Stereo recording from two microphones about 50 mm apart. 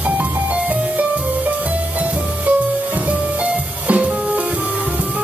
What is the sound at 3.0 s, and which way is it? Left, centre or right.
Music, right.